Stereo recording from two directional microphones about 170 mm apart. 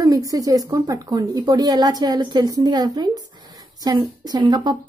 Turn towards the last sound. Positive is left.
turn(degrees=-25)  # may be behind; listen again after turning